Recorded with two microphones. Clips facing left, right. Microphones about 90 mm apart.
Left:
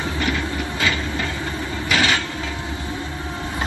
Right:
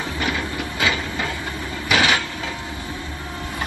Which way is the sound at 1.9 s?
10° right (ahead or behind).